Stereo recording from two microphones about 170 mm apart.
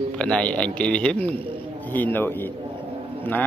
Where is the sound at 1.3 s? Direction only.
30° right (ahead or behind).